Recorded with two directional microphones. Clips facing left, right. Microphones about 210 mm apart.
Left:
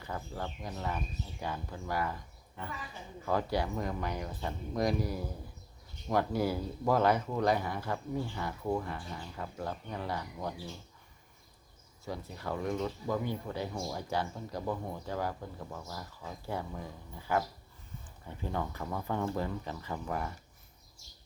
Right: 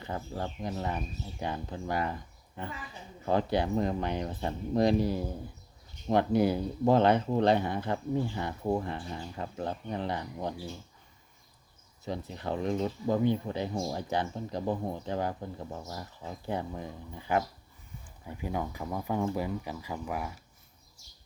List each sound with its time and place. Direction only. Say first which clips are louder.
0.0 s speech: right 3 dB; 30° right (ahead or behind)
3.2 s speech: right 4 dB; 25° right (ahead or behind)
12.0 s speech: right 4 dB; 20° right (ahead or behind)